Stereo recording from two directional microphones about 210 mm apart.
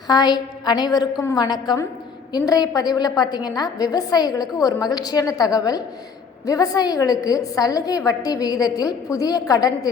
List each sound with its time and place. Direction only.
0.1 s a woman's voice: 20° left (ahead or behind)